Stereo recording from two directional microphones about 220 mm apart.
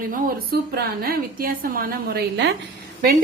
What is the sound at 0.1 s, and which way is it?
A woman's voice, 40° right (ahead or behind).